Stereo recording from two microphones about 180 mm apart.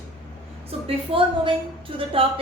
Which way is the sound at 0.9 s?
30° right (ahead or behind).